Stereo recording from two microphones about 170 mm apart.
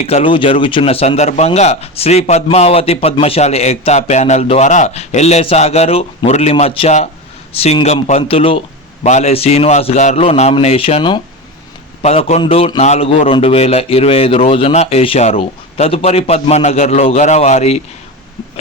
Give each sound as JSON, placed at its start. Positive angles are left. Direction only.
{"t": 0.0, "sound": "a man's voice", "side_deg": 35}